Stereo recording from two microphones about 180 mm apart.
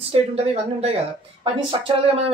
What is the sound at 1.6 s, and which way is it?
Speech, 30° right (ahead or behind).